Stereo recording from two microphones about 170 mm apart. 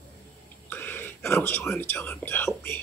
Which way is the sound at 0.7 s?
10° left (ahead or behind).